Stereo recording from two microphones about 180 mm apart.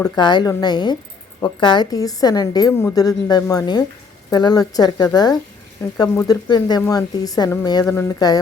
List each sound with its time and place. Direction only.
0.0 s a woman's voice: 25° left (ahead or behind)